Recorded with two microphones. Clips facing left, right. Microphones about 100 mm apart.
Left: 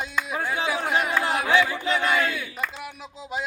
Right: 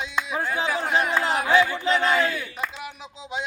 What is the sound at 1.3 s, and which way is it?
Speech, 20° right (ahead or behind).